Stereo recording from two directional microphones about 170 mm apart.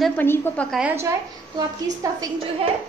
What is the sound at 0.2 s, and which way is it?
Speech, 10° left (ahead or behind).